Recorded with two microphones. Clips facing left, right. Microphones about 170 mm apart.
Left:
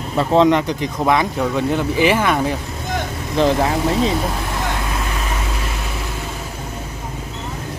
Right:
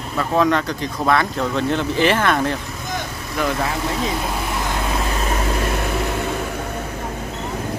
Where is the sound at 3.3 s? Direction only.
30° left (ahead or behind).